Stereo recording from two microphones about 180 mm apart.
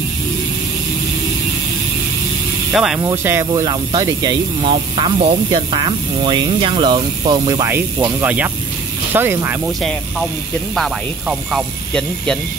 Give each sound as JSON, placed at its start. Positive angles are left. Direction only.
{"t": 2.7, "sound": "speech", "side_deg": -5}
{"t": 3.0, "sound": "speech", "side_deg": -15}
{"t": 7.6, "sound": "speech", "side_deg": -15}
{"t": 9.8, "sound": "speech", "side_deg": 5}